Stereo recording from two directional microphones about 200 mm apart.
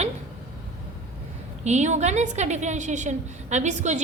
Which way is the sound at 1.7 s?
35° right (ahead or behind).